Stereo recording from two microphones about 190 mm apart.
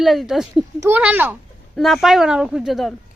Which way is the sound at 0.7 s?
15° right (ahead or behind).